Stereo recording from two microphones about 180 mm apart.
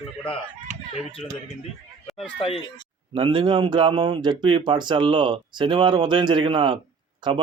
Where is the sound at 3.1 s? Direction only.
30° right (ahead or behind).